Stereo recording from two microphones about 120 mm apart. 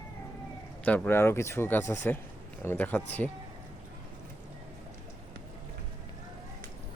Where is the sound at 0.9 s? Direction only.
15° left (ahead or behind).